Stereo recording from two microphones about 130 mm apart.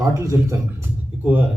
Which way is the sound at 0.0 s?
20° right (ahead or behind).